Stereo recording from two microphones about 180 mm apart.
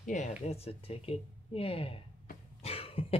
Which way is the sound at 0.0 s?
40° left (ahead or behind).